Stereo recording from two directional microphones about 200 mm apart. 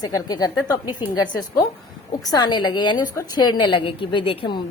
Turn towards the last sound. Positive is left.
turn(degrees=25)  # may be behind; listen again after turning